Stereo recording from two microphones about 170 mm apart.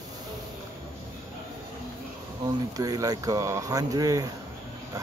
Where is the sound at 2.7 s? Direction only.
20° right (ahead or behind).